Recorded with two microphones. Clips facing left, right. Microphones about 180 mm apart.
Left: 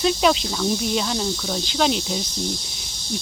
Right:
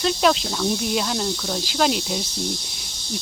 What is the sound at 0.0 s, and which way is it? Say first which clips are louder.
Speech: left 1 dB; centre (ahead or behind).